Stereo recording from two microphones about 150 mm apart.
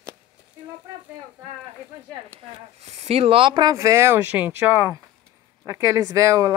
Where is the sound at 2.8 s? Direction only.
45° right (ahead or behind).